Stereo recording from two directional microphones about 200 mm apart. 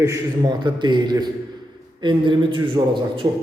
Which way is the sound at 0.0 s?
20° right (ahead or behind).